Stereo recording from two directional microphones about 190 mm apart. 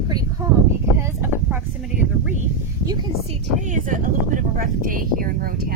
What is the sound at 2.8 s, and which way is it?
Speech, 25° right (ahead or behind).